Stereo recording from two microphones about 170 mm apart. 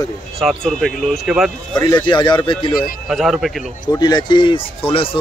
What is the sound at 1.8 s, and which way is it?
Speech, 25° left (ahead or behind).